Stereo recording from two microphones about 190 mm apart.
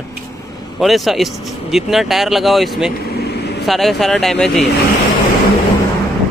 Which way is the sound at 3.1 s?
55° left (ahead or behind).